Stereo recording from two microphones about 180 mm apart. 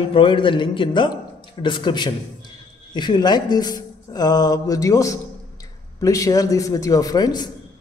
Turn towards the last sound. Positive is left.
turn(degrees=20)  # may be behind; listen again after turning